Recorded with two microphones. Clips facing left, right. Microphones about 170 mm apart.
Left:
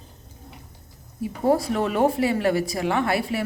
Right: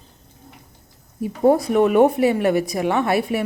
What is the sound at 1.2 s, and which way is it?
Speech, 20° right (ahead or behind).